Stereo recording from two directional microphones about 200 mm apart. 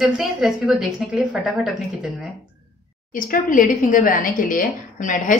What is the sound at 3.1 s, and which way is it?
Speech, 45° left (ahead or behind).